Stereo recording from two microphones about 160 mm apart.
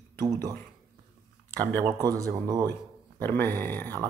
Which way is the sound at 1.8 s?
25° right (ahead or behind).